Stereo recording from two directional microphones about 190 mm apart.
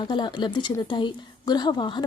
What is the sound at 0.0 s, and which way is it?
A woman's voice, 25° left (ahead or behind).